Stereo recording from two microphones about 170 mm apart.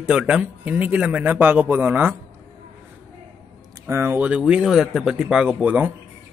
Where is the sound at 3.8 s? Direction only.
15° right (ahead or behind).